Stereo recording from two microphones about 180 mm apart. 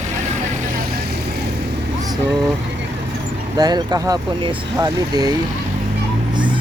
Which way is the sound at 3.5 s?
20° right (ahead or behind).